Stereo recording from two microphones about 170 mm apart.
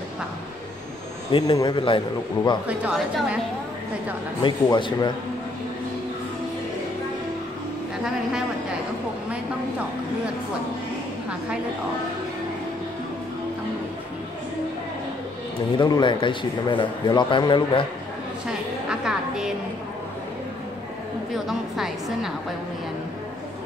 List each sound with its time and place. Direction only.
1.3 s a man's voice: 30° left (ahead or behind)
2.6 s speech: 5° right (ahead or behind)
4.4 s a man's voice: 25° left (ahead or behind)
15.8 s a man's voice: 25° left (ahead or behind)
18.9 s music: 5° right (ahead or behind)
21.5 s a woman's voice: centre (ahead or behind)